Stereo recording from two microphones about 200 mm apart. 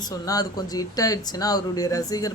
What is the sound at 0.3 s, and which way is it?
A woman's voice, 20° left (ahead or behind).